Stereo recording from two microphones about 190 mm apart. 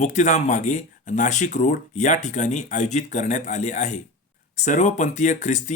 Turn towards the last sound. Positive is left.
turn(degrees=40)  # may be behind; listen again after turning